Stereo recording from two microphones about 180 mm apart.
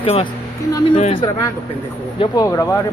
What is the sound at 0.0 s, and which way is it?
Speech, 35° left (ahead or behind).